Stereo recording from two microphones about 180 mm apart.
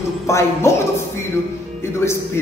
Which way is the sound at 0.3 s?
15° left (ahead or behind).